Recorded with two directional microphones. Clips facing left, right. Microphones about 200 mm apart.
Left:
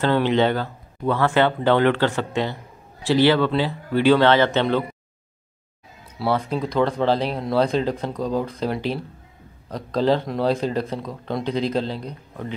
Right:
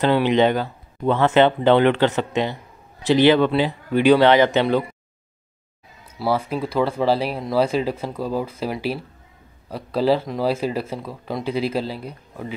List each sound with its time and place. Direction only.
0.0 s speech: 15° right (ahead or behind)
6.1 s speech: 5° right (ahead or behind)